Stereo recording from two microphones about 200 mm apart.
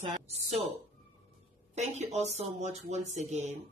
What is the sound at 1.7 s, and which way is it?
Speech, 35° right (ahead or behind).